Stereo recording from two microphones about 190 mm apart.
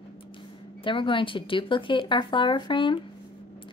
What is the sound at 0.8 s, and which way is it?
A woman's voice, 25° left (ahead or behind).